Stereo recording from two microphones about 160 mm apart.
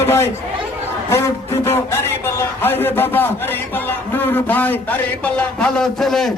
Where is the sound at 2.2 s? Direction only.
15° left (ahead or behind).